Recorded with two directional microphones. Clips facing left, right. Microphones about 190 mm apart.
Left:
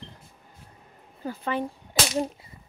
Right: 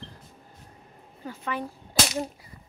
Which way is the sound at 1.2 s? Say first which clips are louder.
Left 4 dB; 35° left (ahead or behind).